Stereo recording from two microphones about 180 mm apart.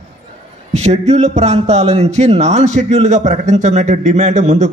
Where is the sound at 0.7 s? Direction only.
40° right (ahead or behind).